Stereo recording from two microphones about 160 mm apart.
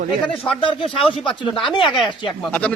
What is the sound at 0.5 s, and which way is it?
Speech, 35° left (ahead or behind).